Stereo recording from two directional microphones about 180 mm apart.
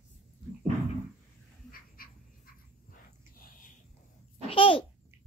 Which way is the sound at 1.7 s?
55° left (ahead or behind).